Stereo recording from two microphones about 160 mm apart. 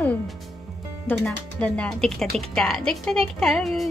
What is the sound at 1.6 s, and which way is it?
Speech, 5° left (ahead or behind).